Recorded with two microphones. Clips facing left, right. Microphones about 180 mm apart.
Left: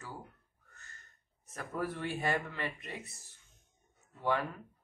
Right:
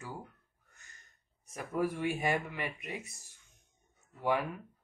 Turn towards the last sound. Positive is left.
turn(degrees=-15)  # may be behind; listen again after turning